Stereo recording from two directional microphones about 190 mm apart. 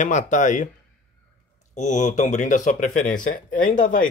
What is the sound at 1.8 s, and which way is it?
Speech, 40° left (ahead or behind).